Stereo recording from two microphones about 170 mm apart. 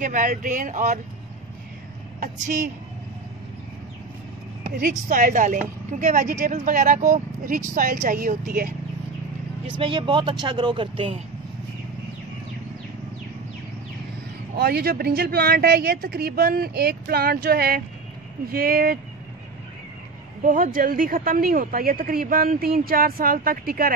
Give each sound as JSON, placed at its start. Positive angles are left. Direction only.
{"t": 0.0, "sound": "speech", "side_deg": -50}
{"t": 4.6, "sound": "speech", "side_deg": -55}
{"t": 9.8, "sound": "speech", "side_deg": -30}
{"t": 14.6, "sound": "a woman's voice", "side_deg": -65}
{"t": 20.4, "sound": "a woman's voice", "side_deg": -55}